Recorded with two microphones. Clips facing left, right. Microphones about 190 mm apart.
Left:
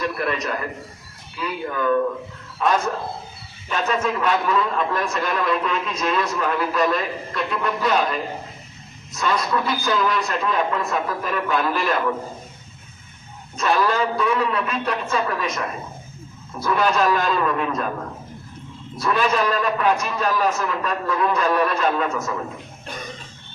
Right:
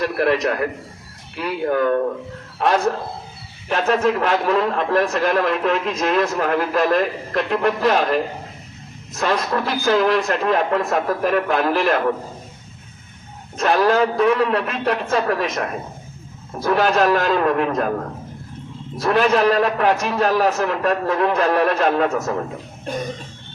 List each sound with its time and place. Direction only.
0.0 s a man's voice: 70° right (ahead or behind)
9.5 s a man's voice: 55° right (ahead or behind)
13.6 s a man's voice: 55° right (ahead or behind)
16.6 s a man's voice: 60° right (ahead or behind)
19.0 s a man's voice: 60° right (ahead or behind)